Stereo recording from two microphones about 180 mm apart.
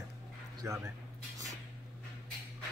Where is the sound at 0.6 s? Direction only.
15° right (ahead or behind).